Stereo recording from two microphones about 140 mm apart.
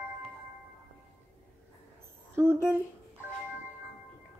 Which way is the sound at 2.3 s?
15° right (ahead or behind).